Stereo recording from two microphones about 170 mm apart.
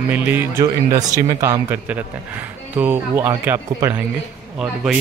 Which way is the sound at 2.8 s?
10° right (ahead or behind).